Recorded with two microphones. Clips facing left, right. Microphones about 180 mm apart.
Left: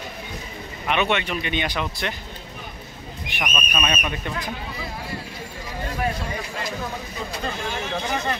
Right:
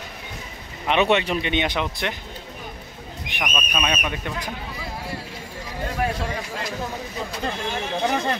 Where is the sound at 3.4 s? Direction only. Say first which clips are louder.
Even; centre (ahead or behind).